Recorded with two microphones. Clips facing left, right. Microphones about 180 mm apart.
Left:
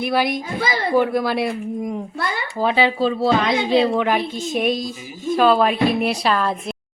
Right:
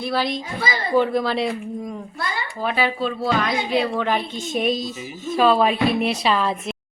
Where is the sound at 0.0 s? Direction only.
15° left (ahead or behind).